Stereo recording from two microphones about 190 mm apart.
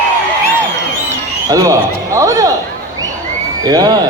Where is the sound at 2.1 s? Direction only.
15° right (ahead or behind).